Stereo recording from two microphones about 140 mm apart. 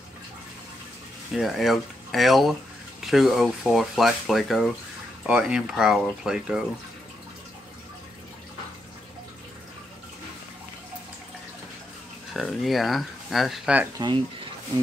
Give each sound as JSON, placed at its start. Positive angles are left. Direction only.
{"t": 1.3, "sound": "speech", "side_deg": 0}
{"t": 12.4, "sound": "speech", "side_deg": 0}
{"t": 14.0, "sound": "speech", "side_deg": -30}